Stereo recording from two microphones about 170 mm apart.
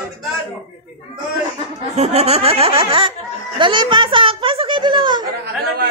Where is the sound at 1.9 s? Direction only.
40° right (ahead or behind).